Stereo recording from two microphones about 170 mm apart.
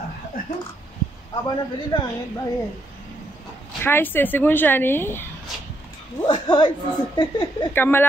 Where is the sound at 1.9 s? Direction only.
25° left (ahead or behind).